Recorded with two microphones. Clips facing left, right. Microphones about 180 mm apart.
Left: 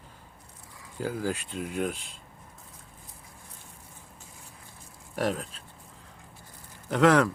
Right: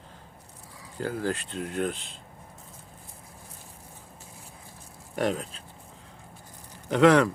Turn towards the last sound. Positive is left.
turn(degrees=0)  # may be behind; listen again after turning